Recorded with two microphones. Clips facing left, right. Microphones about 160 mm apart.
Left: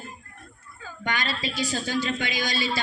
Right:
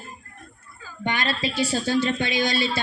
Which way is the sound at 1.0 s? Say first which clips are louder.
Right 3 dB; 25° right (ahead or behind).